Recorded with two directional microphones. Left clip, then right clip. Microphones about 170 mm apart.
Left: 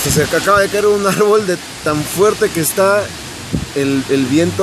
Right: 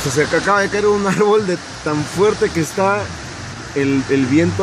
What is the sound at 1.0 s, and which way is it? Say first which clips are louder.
Speech: left 2 dB; 20° left (ahead or behind).